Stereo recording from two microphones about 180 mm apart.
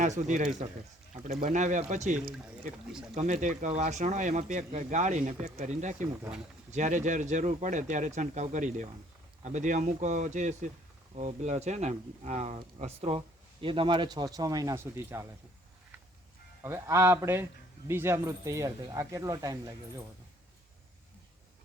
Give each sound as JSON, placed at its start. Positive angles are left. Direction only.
{"t": 0.0, "sound": "speech", "side_deg": -40}
{"t": 3.2, "sound": "speech", "side_deg": -40}
{"t": 16.6, "sound": "speech", "side_deg": -15}